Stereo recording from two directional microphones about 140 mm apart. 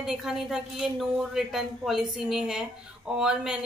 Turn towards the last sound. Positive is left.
turn(degrees=-5)  # may be behind; listen again after turning